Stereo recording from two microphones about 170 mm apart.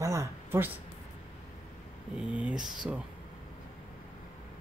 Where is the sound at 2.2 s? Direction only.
5° right (ahead or behind).